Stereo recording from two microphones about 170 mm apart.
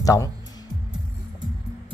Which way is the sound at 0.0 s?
20° left (ahead or behind).